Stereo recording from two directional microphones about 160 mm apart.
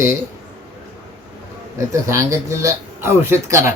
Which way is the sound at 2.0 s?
20° right (ahead or behind).